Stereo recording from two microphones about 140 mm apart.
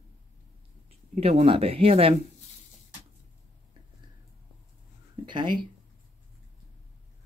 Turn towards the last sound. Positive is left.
turn(degrees=-35)  # may be behind; listen again after turning